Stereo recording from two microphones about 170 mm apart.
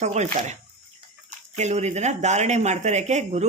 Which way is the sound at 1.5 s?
40° right (ahead or behind).